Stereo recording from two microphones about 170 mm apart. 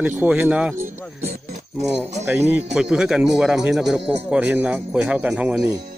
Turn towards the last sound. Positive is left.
turn(degrees=-5)  # may be behind; listen again after turning